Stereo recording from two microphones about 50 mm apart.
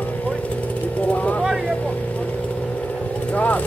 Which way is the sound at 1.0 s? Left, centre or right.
Left.